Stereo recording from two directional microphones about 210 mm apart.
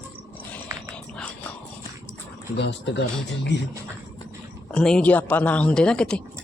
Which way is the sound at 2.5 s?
55° left (ahead or behind).